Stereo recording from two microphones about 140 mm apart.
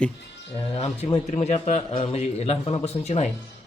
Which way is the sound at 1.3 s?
50° left (ahead or behind).